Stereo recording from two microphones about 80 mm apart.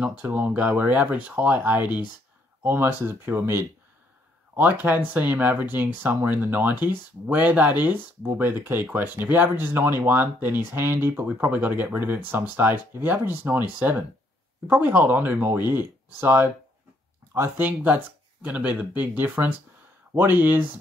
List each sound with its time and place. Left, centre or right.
0.3 s speech: centre; by 2.9 s right
4.6 s speech: right
17.6 s speech: right